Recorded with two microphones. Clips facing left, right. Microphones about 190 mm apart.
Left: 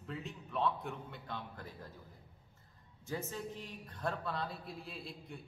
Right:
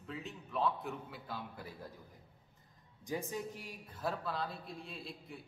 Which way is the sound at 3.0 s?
15° right (ahead or behind).